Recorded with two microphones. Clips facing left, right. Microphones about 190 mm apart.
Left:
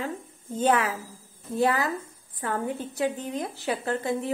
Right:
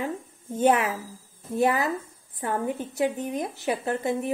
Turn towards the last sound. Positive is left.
turn(degrees=-20)  # may be behind; listen again after turning